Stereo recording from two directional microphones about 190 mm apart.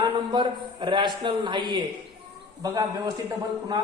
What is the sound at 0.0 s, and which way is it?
A man's voice, 25° right (ahead or behind).